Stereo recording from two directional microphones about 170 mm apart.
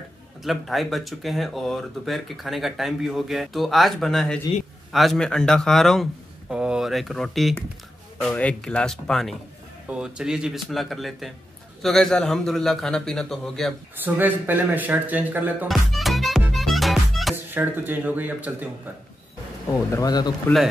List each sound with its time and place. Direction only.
0.4 s speech: centre (ahead or behind)
14.0 s speech: 10° right (ahead or behind)
15.7 s music: centre (ahead or behind)
17.6 s speech: 10° right (ahead or behind)
19.7 s speech: 20° left (ahead or behind)